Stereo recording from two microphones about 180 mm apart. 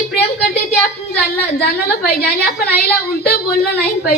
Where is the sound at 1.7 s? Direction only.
60° left (ahead or behind).